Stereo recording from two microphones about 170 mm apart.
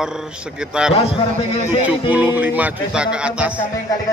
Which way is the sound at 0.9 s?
35° left (ahead or behind).